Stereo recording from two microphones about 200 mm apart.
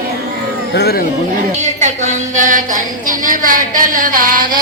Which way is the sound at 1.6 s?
35° right (ahead or behind).